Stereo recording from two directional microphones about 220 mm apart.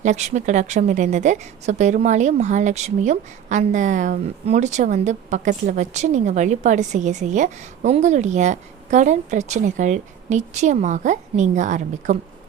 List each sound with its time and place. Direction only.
0.0 s a woman's voice: 30° right (ahead or behind)